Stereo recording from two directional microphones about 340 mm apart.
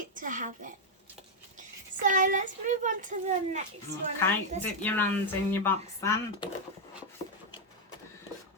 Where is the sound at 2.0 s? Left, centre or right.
Right.